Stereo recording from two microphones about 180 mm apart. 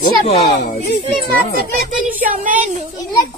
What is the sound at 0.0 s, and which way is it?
Speech, 50° left (ahead or behind).